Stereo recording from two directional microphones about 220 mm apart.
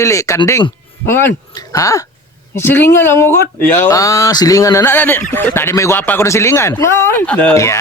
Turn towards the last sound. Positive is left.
turn(degrees=15)  # may be behind; listen again after turning